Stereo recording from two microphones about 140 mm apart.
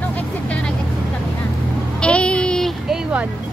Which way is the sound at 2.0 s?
10° left (ahead or behind).